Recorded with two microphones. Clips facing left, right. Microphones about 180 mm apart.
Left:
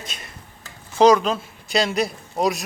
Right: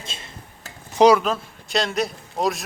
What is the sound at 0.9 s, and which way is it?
Speech, 10° right (ahead or behind).